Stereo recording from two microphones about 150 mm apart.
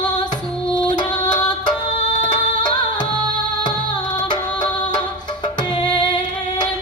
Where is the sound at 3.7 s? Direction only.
30° left (ahead or behind).